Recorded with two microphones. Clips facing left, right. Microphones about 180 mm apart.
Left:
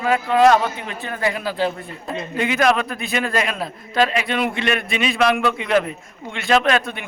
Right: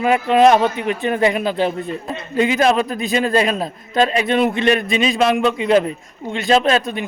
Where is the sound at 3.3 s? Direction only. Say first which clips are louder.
Right 5 dB; 35° right (ahead or behind).